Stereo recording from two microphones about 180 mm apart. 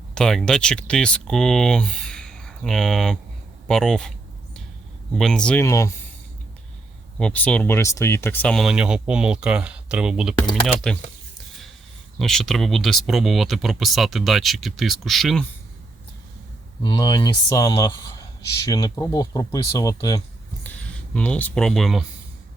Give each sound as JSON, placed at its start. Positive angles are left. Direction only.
{"t": 0.1, "sound": "speech", "side_deg": 5}
{"t": 5.1, "sound": "speech", "side_deg": 5}
{"t": 7.2, "sound": "speech", "side_deg": 5}
{"t": 12.2, "sound": "speech", "side_deg": 0}
{"t": 16.8, "sound": "speech", "side_deg": 20}
{"t": 20.7, "sound": "speech", "side_deg": 5}